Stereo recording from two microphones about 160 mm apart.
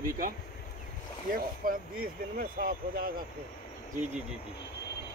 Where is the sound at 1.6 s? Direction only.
60° right (ahead or behind).